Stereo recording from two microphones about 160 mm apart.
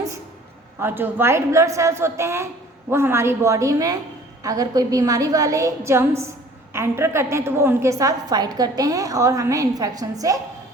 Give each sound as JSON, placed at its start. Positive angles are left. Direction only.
{"t": 0.8, "sound": "a woman's voice", "side_deg": -15}